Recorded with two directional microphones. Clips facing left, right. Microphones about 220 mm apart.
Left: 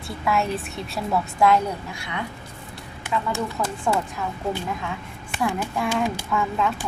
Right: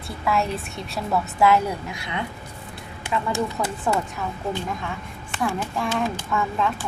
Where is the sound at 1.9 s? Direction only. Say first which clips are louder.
Right 2 dB; 20° right (ahead or behind).